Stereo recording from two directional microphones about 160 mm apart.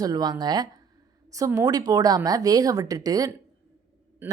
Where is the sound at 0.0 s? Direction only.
25° right (ahead or behind).